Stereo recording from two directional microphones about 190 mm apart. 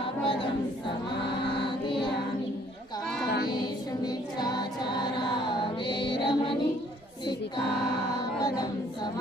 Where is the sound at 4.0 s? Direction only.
20° left (ahead or behind).